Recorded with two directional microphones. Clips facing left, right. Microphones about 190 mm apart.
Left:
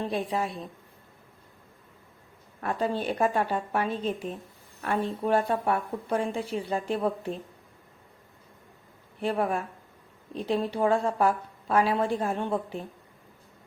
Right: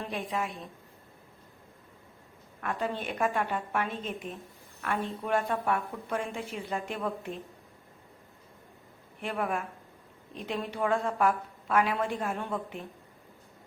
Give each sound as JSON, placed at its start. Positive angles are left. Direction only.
{"t": 0.0, "sound": "a woman's voice", "side_deg": 35}
{"t": 2.6, "sound": "a woman's voice", "side_deg": 35}
{"t": 9.2, "sound": "a woman's voice", "side_deg": 35}